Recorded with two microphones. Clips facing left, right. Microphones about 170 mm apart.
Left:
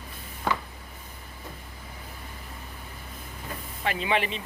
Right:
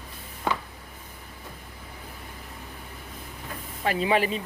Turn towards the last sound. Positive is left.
turn(degrees=-40)  # may be behind; listen again after turning